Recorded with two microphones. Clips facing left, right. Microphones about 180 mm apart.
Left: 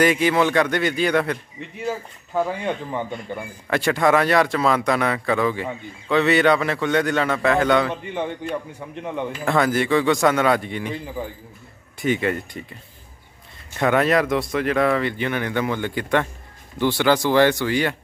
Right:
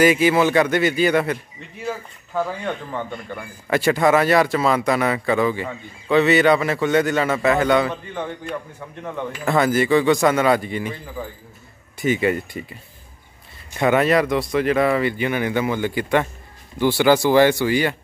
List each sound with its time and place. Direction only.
0.0 s speech: 5° right (ahead or behind)
2.3 s speech: 15° left (ahead or behind)
3.7 s speech: 5° right (ahead or behind)
7.9 s speech: 15° left (ahead or behind)
9.4 s speech: centre (ahead or behind)
12.0 s speech: 5° right (ahead or behind)
13.7 s speech: 5° right (ahead or behind)